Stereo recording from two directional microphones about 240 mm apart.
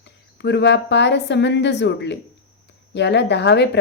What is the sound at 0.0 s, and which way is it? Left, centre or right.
A woman's voice, left.